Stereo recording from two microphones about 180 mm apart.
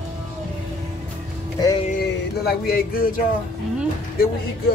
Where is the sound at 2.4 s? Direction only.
60° left (ahead or behind).